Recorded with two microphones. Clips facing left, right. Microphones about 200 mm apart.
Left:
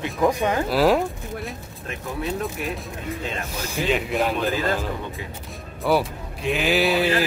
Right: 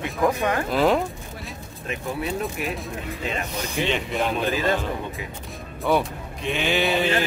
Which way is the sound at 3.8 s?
5° left (ahead or behind).